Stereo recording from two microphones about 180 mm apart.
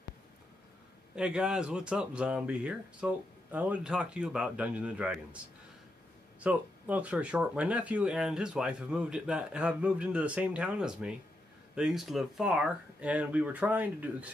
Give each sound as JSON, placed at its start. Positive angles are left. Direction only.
{"t": 1.1, "sound": "speech", "side_deg": -5}
{"t": 6.4, "sound": "speech", "side_deg": -10}